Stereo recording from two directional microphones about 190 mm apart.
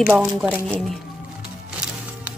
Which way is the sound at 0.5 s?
5° left (ahead or behind).